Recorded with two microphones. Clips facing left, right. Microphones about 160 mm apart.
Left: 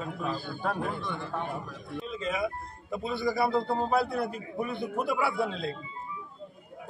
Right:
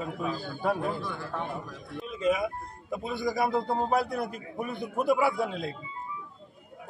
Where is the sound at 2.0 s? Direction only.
5° right (ahead or behind).